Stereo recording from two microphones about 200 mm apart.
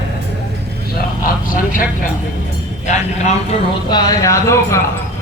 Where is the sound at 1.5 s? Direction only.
45° left (ahead or behind).